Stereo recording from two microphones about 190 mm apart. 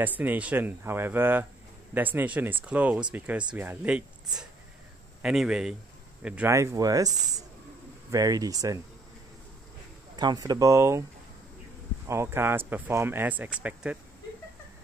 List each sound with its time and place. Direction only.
0.0 s speech: 10° right (ahead or behind)
5.2 s speech: centre (ahead or behind); by 8.8 s 15° right (ahead or behind)
10.1 s speech: 20° right (ahead or behind)
12.1 s speech: 15° right (ahead or behind)